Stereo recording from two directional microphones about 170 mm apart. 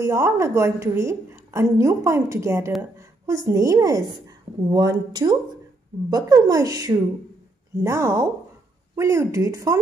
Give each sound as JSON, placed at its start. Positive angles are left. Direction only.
{"t": 0.0, "sound": "a woman's voice", "side_deg": -15}